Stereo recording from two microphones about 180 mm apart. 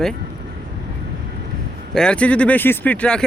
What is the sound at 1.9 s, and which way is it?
Speech, 5° left (ahead or behind).